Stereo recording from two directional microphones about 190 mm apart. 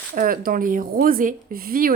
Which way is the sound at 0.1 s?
50° right (ahead or behind).